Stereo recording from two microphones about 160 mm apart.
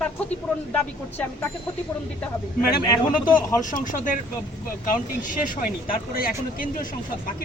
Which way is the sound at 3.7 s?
55° left (ahead or behind).